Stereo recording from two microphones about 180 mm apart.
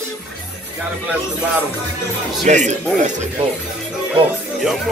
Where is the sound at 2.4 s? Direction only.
40° right (ahead or behind).